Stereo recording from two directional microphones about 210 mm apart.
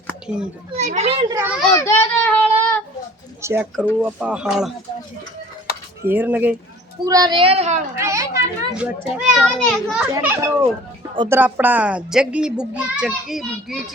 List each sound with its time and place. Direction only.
0.3 s a child's voice: 5° right (ahead or behind)
0.8 s a child's voice: 35° right (ahead or behind)
1.3 s a child's voice: 10° right (ahead or behind)
1.7 s child singing: 10° left (ahead or behind)
3.4 s a child's voice: 10° right (ahead or behind)
6.1 s a child's voice: 10° right (ahead or behind); by 7.8 s 30° right (ahead or behind)
7.9 s a child's voice: 15° right (ahead or behind)
10.1 s a child's voice: 10° right (ahead or behind)